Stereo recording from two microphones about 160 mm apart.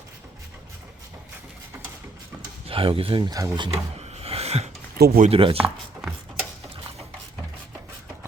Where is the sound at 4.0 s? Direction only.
40° right (ahead or behind).